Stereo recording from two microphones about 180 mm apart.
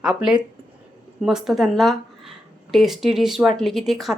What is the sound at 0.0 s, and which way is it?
A woman's voice, 5° right (ahead or behind).